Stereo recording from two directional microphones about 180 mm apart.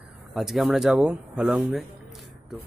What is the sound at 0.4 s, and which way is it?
Speech, centre (ahead or behind).